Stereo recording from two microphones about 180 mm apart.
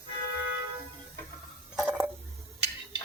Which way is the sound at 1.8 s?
10° right (ahead or behind).